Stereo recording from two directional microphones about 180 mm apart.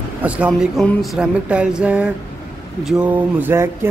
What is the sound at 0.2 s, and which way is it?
Speech, 10° right (ahead or behind).